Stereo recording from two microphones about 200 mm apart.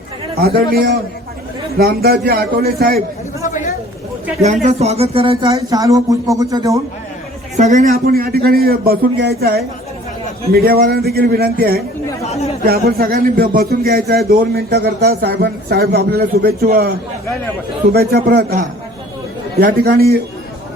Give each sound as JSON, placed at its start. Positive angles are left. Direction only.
{"t": 0.3, "sound": "speech", "side_deg": -50}
{"t": 3.4, "sound": "chatter", "side_deg": 40}
{"t": 4.4, "sound": "a sound", "side_deg": -35}
{"t": 5.7, "sound": "speech", "side_deg": -15}
{"t": 7.5, "sound": "speech", "side_deg": -35}
{"t": 10.5, "sound": "speech", "side_deg": -50}
{"t": 17.9, "sound": "speech", "side_deg": -50}